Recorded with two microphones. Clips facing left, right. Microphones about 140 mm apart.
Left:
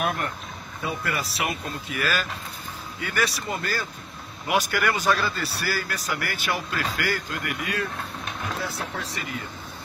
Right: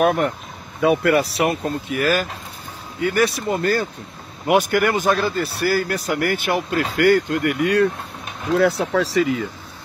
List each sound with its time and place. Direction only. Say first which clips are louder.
0.0 s speech: right 10 dB; 60° right (ahead or behind)
0.7 s speech: right 13 dB; 75° right (ahead or behind)
1.1 s speech: right 10 dB; 50° right (ahead or behind); by 9.5 s 90° right